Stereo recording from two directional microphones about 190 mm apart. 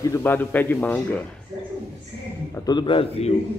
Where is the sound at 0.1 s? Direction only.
10° left (ahead or behind).